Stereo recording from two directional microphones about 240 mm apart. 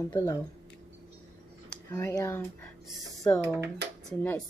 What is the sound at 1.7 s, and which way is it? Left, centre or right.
Speech, centre.